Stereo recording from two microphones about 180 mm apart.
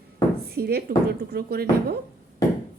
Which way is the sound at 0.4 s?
60° right (ahead or behind).